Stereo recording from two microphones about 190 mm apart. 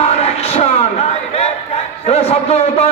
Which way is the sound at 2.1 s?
30° left (ahead or behind).